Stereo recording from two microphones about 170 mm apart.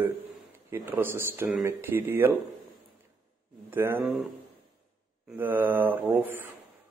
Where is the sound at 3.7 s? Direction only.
10° right (ahead or behind).